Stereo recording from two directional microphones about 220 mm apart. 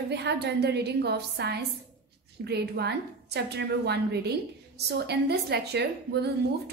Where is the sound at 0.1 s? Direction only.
50° right (ahead or behind).